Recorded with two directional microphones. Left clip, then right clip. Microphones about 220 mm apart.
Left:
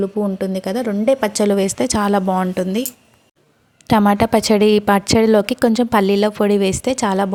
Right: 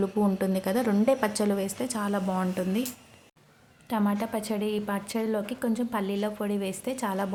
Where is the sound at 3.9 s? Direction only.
45° left (ahead or behind).